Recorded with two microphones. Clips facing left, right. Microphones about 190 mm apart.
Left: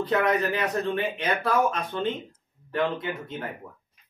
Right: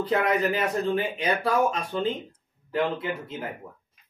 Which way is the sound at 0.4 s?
35° right (ahead or behind).